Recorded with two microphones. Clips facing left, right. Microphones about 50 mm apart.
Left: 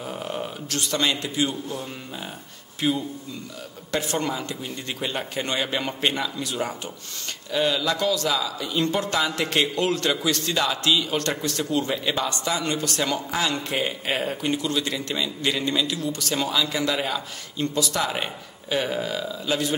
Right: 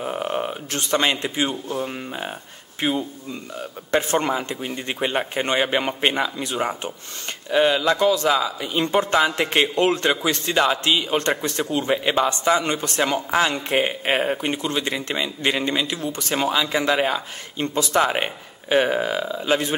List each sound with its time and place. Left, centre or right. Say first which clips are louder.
0.0 s a man's voice: right 6 dB; right